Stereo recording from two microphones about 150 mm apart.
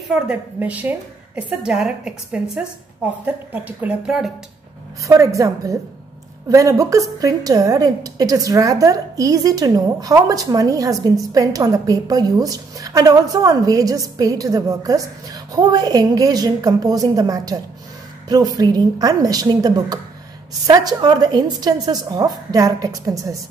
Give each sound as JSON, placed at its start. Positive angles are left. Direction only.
{"t": 0.1, "sound": "a woman's voice", "side_deg": -10}
{"t": 5.0, "sound": "a woman's voice", "side_deg": -20}